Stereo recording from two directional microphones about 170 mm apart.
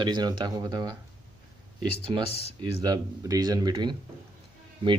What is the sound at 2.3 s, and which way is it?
Speech, 35° left (ahead or behind).